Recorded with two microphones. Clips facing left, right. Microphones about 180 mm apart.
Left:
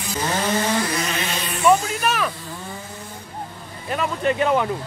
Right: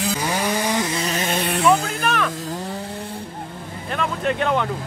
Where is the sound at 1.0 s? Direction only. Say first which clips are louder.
Right 4 dB; 45° right (ahead or behind).